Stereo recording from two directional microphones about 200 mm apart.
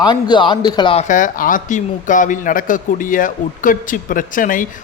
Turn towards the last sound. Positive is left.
turn(degrees=40)  # may be behind; listen again after turning